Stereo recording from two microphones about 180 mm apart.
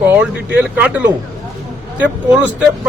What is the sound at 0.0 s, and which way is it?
Speech, 10° right (ahead or behind).